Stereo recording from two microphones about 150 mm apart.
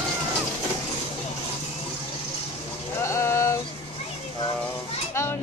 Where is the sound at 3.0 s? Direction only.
20° left (ahead or behind).